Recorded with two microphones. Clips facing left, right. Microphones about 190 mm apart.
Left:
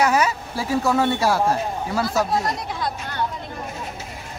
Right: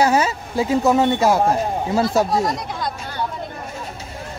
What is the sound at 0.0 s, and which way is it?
Speech, 30° right (ahead or behind).